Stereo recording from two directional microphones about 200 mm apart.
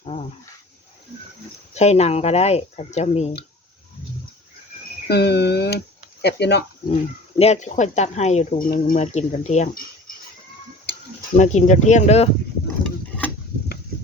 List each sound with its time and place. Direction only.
0.0 s dog: 30° left (ahead or behind)
1.7 s speech: 35° left (ahead or behind)
5.0 s speech: 55° left (ahead or behind)
6.8 s speech: 30° left (ahead or behind)
11.3 s speech: 35° left (ahead or behind)